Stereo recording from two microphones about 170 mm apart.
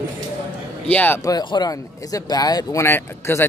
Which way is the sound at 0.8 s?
10° left (ahead or behind).